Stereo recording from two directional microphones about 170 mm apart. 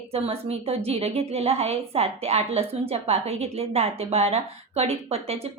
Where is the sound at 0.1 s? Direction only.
35° right (ahead or behind).